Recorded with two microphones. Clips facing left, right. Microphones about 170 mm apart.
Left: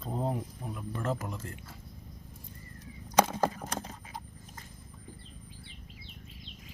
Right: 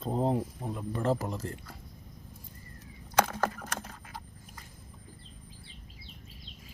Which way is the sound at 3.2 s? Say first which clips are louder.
Left 2 dB; 15° left (ahead or behind).